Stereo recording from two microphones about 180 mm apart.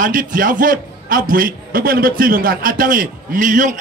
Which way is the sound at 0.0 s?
50° right (ahead or behind).